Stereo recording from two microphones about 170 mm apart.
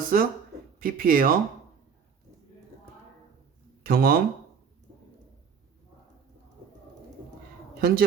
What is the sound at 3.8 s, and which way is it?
Speech, 65° right (ahead or behind).